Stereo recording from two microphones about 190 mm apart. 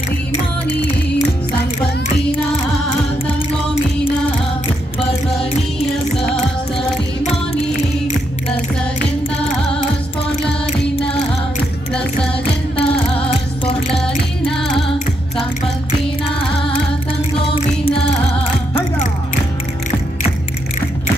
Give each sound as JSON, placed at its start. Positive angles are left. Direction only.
{"t": 11.9, "sound": "music", "side_deg": 5}
{"t": 12.7, "sound": "music", "side_deg": 30}
{"t": 13.8, "sound": "music", "side_deg": 0}